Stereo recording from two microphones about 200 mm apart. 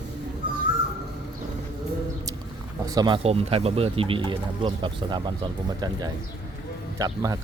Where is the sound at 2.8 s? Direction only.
20° right (ahead or behind).